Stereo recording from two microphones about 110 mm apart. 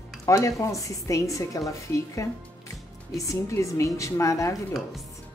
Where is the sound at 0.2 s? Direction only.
30° left (ahead or behind).